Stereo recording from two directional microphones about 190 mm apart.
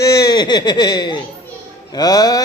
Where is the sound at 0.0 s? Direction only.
20° left (ahead or behind).